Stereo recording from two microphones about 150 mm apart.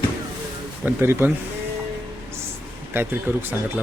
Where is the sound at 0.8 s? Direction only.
15° right (ahead or behind).